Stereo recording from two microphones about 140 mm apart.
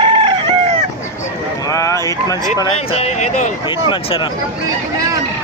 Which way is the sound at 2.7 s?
45° left (ahead or behind).